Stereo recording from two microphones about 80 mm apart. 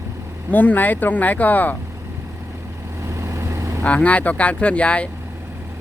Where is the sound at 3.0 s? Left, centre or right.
Right.